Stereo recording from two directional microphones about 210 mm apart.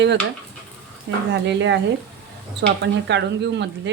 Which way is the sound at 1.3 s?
60° right (ahead or behind).